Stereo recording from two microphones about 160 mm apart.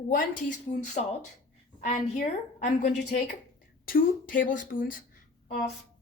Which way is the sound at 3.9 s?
60° left (ahead or behind).